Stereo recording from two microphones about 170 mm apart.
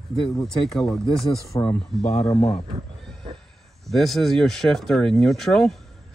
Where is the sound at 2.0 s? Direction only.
40° left (ahead or behind).